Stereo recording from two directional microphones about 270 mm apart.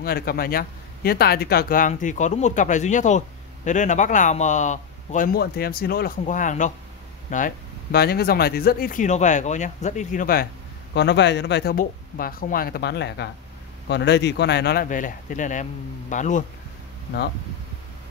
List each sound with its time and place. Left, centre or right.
0.0 s speech: left